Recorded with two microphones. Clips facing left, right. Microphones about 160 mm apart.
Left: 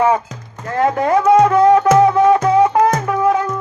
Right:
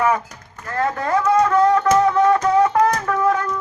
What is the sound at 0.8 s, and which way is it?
Speech, 20° left (ahead or behind).